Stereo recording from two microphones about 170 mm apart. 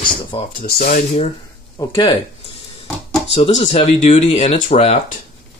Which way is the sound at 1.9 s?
30° left (ahead or behind).